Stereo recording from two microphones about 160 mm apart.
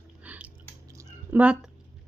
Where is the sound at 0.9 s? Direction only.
20° right (ahead or behind).